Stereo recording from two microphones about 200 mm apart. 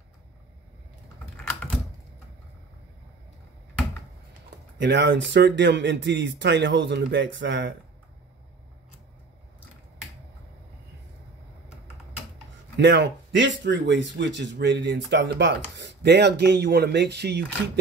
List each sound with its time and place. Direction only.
4.7 s speech: 60° right (ahead or behind)
12.7 s speech: 60° right (ahead or behind)